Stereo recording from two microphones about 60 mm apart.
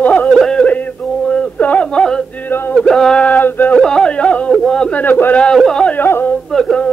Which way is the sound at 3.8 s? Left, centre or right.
Centre.